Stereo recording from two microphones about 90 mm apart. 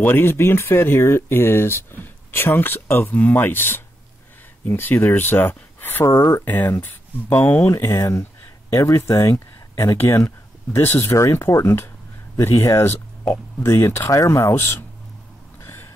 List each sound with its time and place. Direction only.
0.0 s speech: 25° left (ahead or behind)
7.7 s speech: 35° left (ahead or behind)
15.6 s vehicle: 25° left (ahead or behind)